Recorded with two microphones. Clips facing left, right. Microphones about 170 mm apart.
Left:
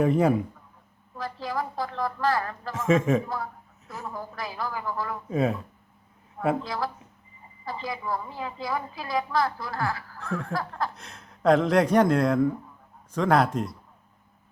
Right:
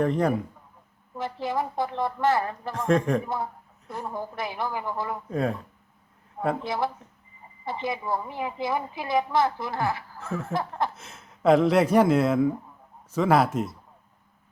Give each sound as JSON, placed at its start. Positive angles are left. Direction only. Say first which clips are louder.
{"t": 0.0, "sound": "a man's voice", "louder": "left 2 dB", "side_deg": 5}
{"t": 1.1, "sound": "a woman's voice", "louder": "right 3 dB", "side_deg": -20}
{"t": 2.7, "sound": "speech", "louder": "left 1 dB", "side_deg": 5}
{"t": 3.2, "sound": "a woman's voice", "louder": "right 2 dB", "side_deg": -25}
{"t": 5.3, "sound": "speech", "louder": "left 2 dB", "side_deg": 5}
{"t": 6.6, "sound": "a woman's voice", "louder": "right 3 dB", "side_deg": -25}
{"t": 10.2, "sound": "speech", "louder": "even", "side_deg": -5}
{"t": 10.5, "sound": "a woman's voice", "louder": "right 5 dB", "side_deg": -20}
{"t": 10.9, "sound": "speech", "louder": "even", "side_deg": -5}